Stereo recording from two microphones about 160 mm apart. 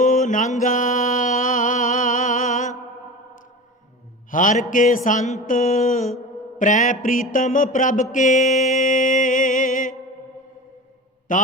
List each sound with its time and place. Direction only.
0.0 s mantra: 55° left (ahead or behind)
4.3 s mantra: 55° left (ahead or behind)
6.6 s music: 55° left (ahead or behind)
11.3 s music: 55° left (ahead or behind)